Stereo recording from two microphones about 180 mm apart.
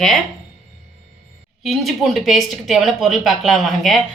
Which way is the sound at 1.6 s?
Centre (ahead or behind).